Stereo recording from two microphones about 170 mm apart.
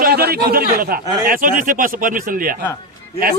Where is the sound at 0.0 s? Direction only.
65° right (ahead or behind).